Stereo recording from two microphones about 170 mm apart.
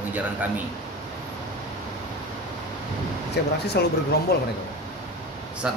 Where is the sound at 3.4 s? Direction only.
75° left (ahead or behind).